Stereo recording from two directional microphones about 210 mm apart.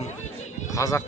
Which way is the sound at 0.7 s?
15° left (ahead or behind).